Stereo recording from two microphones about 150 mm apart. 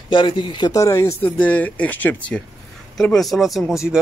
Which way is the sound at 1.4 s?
10° left (ahead or behind).